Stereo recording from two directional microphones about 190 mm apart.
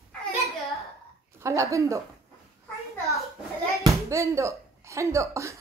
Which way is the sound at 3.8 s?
15° right (ahead or behind).